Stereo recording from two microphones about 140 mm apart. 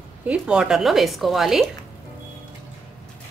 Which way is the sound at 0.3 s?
5° right (ahead or behind).